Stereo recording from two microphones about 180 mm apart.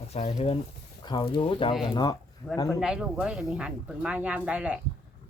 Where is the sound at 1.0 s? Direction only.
25° left (ahead or behind).